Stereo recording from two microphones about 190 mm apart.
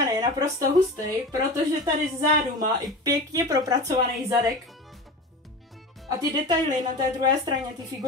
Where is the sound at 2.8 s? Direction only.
20° right (ahead or behind).